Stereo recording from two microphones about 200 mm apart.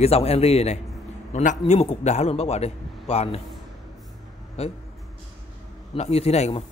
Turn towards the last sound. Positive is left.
turn(degrees=30)  # may be behind; listen again after turning